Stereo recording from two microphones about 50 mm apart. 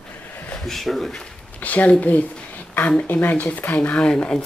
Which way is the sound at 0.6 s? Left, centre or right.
Centre.